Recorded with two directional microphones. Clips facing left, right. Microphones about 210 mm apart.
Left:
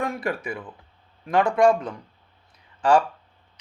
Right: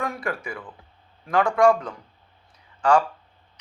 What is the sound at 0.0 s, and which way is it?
Speech, 25° left (ahead or behind).